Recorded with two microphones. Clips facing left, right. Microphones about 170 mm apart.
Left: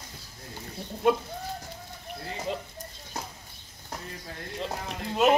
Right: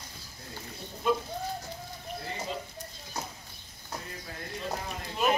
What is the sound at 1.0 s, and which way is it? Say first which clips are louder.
Speech: left 4 dB; 70° left (ahead or behind).